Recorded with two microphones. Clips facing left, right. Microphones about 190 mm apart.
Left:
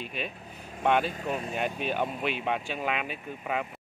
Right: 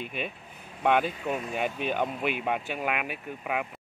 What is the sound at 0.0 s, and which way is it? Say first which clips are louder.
Speech: right 1 dB; 55° right (ahead or behind).